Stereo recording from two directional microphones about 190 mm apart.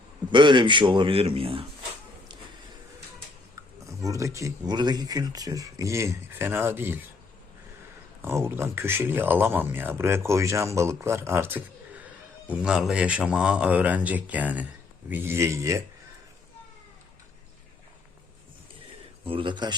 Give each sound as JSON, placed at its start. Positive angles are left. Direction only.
{"t": 0.3, "sound": "speech", "side_deg": -25}
{"t": 4.0, "sound": "speech", "side_deg": -15}
{"t": 8.2, "sound": "speech", "side_deg": -15}
{"t": 19.2, "sound": "speech", "side_deg": -25}